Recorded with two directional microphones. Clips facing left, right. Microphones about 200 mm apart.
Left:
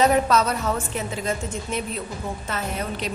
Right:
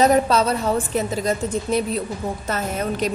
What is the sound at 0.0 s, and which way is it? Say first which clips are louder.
A woman's voice: right 2 dB; 35° right (ahead or behind).